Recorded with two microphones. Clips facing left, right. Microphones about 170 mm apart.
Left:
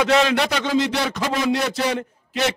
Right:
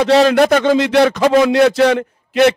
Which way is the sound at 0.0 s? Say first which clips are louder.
Right 7 dB; 35° right (ahead or behind).